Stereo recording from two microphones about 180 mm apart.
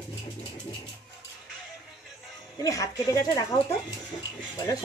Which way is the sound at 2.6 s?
20° left (ahead or behind).